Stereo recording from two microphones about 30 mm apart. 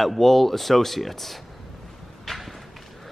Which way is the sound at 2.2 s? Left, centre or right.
Centre.